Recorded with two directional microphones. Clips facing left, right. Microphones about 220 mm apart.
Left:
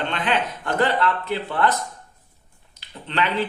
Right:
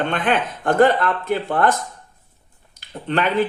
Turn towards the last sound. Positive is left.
turn(degrees=-50)  # may be behind; listen again after turning